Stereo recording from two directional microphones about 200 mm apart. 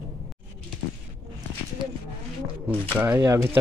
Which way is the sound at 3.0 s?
10° right (ahead or behind).